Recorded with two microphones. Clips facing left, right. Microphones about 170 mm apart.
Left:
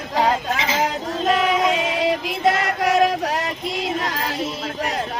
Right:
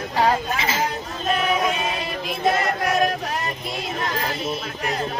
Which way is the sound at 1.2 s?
90° left.